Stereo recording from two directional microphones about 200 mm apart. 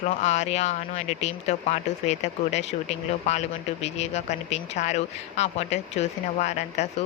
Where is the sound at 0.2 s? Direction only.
35° left (ahead or behind).